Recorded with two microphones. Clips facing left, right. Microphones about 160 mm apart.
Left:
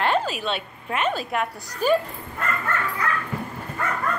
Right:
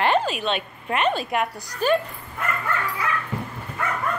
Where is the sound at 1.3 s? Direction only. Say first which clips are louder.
Right 2 dB; 5° left (ahead or behind).